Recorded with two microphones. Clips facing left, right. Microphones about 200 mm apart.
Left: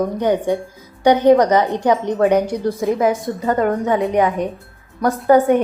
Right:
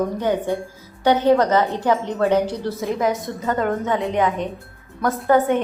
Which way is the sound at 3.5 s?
45° left (ahead or behind).